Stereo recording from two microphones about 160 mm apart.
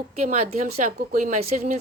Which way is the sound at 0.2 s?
45° right (ahead or behind).